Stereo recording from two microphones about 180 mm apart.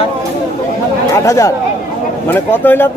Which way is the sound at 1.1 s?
15° left (ahead or behind).